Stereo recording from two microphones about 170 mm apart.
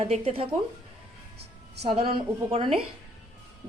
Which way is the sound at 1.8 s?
35° right (ahead or behind).